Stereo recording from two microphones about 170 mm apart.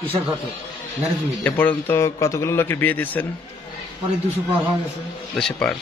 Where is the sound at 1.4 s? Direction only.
10° left (ahead or behind).